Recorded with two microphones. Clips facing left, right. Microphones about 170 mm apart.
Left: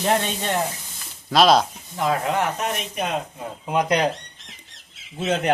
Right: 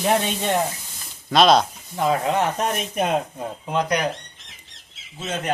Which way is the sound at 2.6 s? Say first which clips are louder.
Right 3 dB; 45° right (ahead or behind).